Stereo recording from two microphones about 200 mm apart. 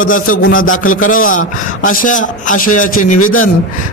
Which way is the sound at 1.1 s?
40° left (ahead or behind).